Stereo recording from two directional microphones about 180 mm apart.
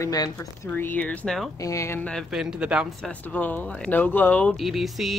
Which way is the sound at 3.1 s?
10° left (ahead or behind).